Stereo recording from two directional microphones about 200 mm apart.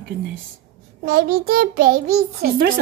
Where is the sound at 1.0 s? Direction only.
50° right (ahead or behind).